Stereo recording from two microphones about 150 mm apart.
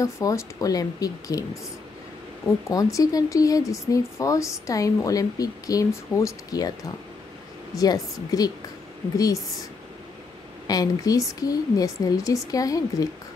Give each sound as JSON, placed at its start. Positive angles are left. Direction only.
{"t": 0.0, "sound": "speech", "side_deg": 20}
{"t": 2.7, "sound": "speech", "side_deg": 25}
{"t": 10.7, "sound": "speech", "side_deg": 25}